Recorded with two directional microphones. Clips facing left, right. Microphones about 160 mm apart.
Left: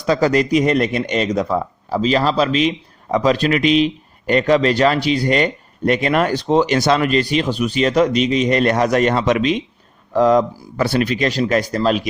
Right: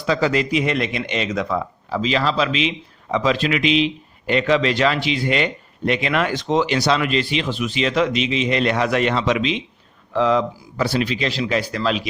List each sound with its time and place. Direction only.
0.0 s speech: 40° left (ahead or behind)